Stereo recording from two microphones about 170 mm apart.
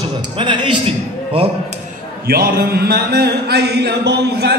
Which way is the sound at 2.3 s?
65° right (ahead or behind).